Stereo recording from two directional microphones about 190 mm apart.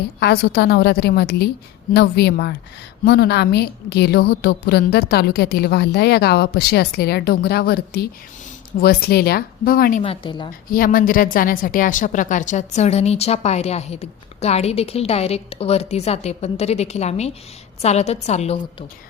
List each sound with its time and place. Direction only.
0.2 s a woman's voice: 55° left (ahead or behind)
10.0 s a woman's voice: 25° left (ahead or behind)
10.7 s a woman's voice: 50° left (ahead or behind)